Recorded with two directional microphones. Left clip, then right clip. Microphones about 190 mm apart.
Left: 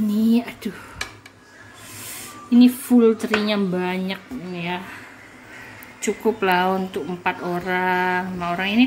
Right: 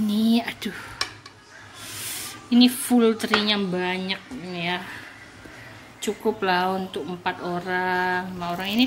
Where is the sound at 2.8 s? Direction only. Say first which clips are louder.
Left 4 dB; centre (ahead or behind).